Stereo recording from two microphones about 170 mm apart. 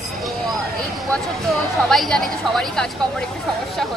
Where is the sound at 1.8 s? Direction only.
Centre (ahead or behind).